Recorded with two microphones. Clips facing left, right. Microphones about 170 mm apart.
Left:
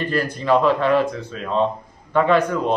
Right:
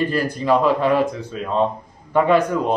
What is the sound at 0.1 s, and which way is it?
Speech, 5° right (ahead or behind).